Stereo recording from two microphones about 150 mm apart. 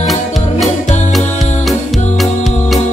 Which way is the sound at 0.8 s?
50° left (ahead or behind).